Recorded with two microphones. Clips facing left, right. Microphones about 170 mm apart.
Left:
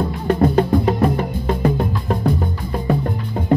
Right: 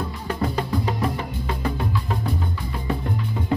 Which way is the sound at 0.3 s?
45° left (ahead or behind).